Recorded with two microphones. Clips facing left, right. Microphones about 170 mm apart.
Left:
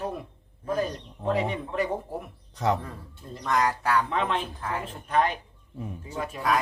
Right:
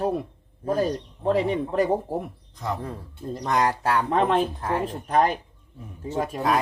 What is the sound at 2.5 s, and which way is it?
Speech, 80° left.